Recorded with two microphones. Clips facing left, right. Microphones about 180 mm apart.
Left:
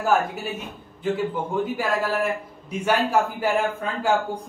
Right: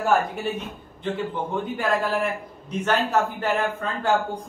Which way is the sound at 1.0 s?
10° left (ahead or behind).